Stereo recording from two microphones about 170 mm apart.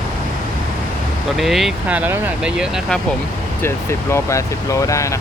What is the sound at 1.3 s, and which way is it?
Speech, centre (ahead or behind).